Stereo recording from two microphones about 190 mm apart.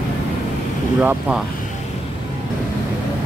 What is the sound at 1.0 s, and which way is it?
Speech, 5° right (ahead or behind).